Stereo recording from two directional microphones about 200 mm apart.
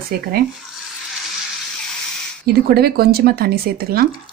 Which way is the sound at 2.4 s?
50° right (ahead or behind).